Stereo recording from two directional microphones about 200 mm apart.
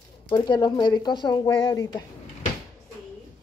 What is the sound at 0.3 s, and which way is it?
Speech, 20° left (ahead or behind).